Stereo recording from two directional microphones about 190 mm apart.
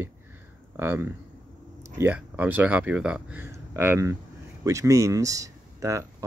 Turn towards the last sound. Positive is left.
turn(degrees=-15)  # may be behind; listen again after turning